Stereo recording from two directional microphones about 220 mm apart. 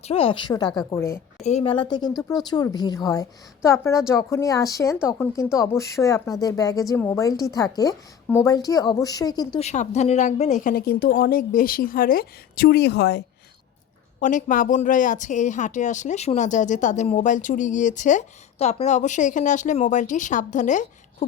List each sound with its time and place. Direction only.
0.0 s a woman's voice: 25° left (ahead or behind)
1.5 s a woman's voice: 25° left (ahead or behind)
9.6 s a woman's voice: 30° left (ahead or behind); by 13.2 s 50° left (ahead or behind)
14.2 s a woman's voice: 35° left (ahead or behind)